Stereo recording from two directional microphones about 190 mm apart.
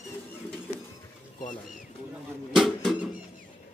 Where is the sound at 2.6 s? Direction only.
Centre (ahead or behind).